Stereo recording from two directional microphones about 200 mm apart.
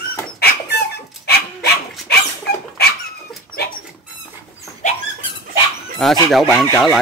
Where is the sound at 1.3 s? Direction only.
55° left (ahead or behind).